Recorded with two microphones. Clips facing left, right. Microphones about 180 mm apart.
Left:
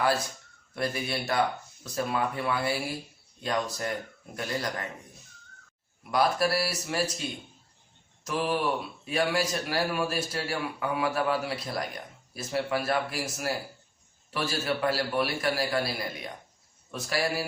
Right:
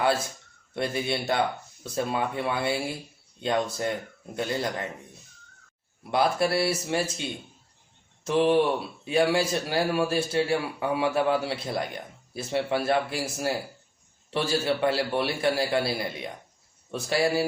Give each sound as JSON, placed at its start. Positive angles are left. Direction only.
{"t": 0.7, "sound": "speech", "side_deg": -25}
{"t": 6.0, "sound": "speech", "side_deg": -25}